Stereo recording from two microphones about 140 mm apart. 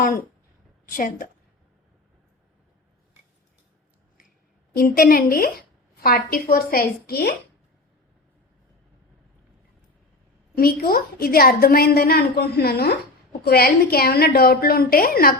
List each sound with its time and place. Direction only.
0.9 s a woman's voice: 75° left (ahead or behind)
4.8 s a woman's voice: 90° left
10.6 s a woman's voice: 90° left